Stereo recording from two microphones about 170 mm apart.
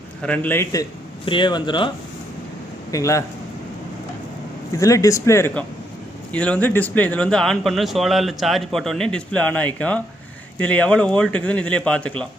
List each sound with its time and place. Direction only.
0.2 s speech: 10° left (ahead or behind)
1.2 s speech: 30° left (ahead or behind)
2.9 s speech: 20° left (ahead or behind)
4.8 s speech: 20° left (ahead or behind)